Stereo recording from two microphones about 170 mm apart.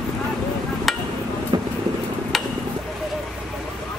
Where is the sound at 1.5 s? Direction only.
25° right (ahead or behind).